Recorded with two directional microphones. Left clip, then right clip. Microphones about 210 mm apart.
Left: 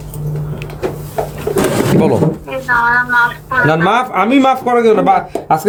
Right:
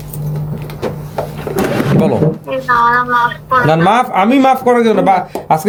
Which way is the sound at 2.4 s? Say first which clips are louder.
Right 4 dB; 30° right (ahead or behind).